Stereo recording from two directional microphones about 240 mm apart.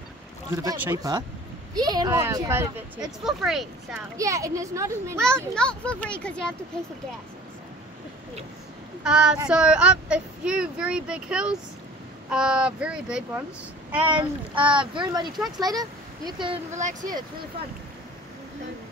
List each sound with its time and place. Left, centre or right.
0.6 s speech: centre
4.2 s speech: centre
5.5 s speech: centre
9.0 s speech: centre
14.0 s speech: centre